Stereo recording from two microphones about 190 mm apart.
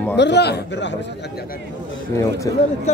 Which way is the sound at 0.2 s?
65° left (ahead or behind).